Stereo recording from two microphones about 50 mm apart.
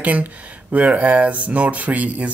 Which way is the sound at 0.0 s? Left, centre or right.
Right.